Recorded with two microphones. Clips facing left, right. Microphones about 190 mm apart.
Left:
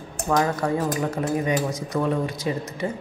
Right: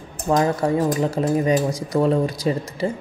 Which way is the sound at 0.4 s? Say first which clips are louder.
Right 4 dB; 30° right (ahead or behind).